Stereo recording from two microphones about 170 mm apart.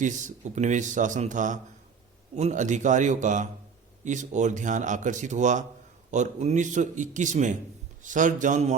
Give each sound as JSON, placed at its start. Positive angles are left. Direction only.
{"t": 0.0, "sound": "speech", "side_deg": -45}